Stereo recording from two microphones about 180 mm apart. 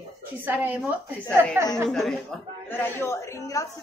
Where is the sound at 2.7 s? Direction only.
10° left (ahead or behind).